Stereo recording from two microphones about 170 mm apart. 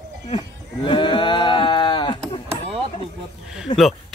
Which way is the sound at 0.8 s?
30° left (ahead or behind).